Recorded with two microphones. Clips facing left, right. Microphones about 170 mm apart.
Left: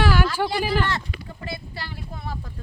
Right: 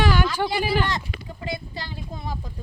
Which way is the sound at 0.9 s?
15° right (ahead or behind).